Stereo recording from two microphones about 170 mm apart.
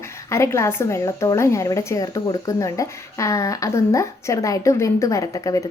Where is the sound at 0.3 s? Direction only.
15° left (ahead or behind).